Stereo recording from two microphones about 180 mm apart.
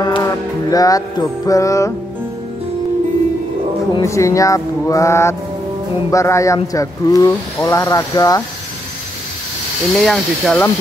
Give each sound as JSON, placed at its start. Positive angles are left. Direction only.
{"t": 0.0, "sound": "music", "side_deg": 20}
{"t": 3.9, "sound": "speech", "side_deg": 15}
{"t": 9.9, "sound": "speech", "side_deg": 0}